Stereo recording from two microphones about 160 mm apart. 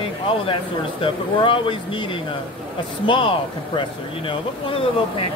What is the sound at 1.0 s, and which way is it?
Speech, 30° left (ahead or behind).